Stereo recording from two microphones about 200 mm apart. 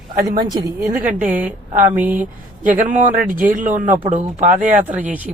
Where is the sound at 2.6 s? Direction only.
40° right (ahead or behind).